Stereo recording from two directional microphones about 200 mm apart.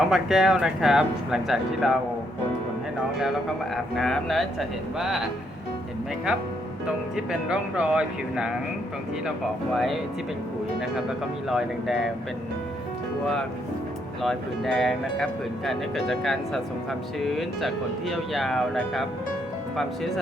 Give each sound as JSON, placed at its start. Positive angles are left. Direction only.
{"t": 0.1, "sound": "speech", "side_deg": 0}
{"t": 3.8, "sound": "speech", "side_deg": 0}
{"t": 6.8, "sound": "speech", "side_deg": -5}
{"t": 9.7, "sound": "speech", "side_deg": 0}
{"t": 11.4, "sound": "speech", "side_deg": 0}
{"t": 14.2, "sound": "speech", "side_deg": 0}